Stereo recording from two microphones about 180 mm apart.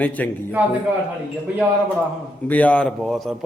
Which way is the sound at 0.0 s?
10° left (ahead or behind).